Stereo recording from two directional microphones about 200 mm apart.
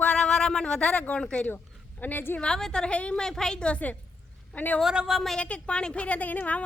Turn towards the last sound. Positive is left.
turn(degrees=10)  # may be behind; listen again after turning